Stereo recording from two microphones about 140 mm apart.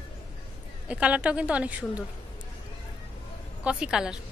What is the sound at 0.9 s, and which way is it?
A woman's voice, 10° right (ahead or behind).